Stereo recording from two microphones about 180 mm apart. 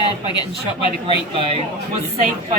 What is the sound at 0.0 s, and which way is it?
Speech, 25° left (ahead or behind).